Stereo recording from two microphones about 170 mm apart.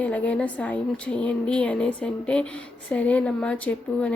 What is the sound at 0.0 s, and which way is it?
A woman's voice, 10° left (ahead or behind).